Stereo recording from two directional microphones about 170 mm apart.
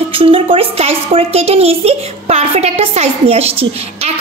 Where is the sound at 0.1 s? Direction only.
35° right (ahead or behind).